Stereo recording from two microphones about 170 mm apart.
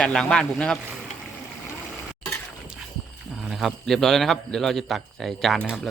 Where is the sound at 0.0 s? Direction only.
5° left (ahead or behind).